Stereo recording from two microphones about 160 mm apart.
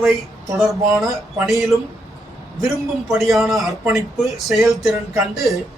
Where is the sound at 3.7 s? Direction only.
20° right (ahead or behind).